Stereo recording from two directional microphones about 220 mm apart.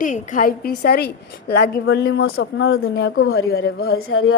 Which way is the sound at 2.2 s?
60° left (ahead or behind).